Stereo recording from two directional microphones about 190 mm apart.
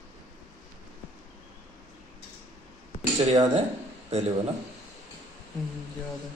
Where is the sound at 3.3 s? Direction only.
35° right (ahead or behind).